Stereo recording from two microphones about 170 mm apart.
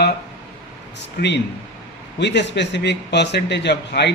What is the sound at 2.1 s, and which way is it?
Speech, 90° left.